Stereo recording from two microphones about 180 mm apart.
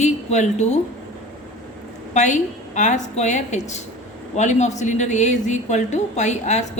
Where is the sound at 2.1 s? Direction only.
40° left (ahead or behind).